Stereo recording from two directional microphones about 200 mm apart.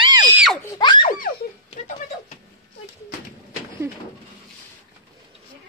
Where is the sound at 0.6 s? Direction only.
20° left (ahead or behind).